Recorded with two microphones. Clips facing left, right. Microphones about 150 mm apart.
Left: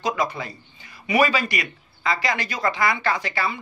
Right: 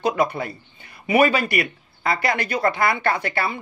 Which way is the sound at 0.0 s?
55° right (ahead or behind).